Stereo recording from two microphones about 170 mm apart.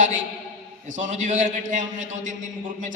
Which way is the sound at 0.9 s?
45° right (ahead or behind).